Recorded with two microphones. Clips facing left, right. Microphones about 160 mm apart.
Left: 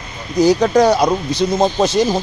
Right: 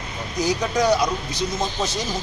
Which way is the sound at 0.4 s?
70° left (ahead or behind).